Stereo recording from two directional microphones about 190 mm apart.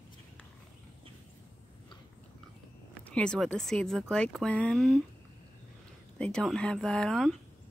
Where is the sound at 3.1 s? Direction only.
5° left (ahead or behind).